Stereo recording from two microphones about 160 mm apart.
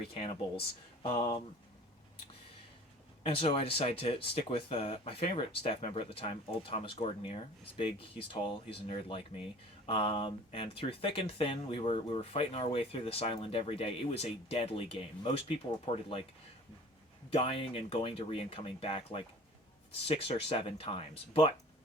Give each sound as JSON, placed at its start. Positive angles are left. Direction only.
{"t": 0.1, "sound": "speech", "side_deg": 35}
{"t": 3.2, "sound": "speech", "side_deg": 35}
{"t": 17.3, "sound": "speech", "side_deg": 35}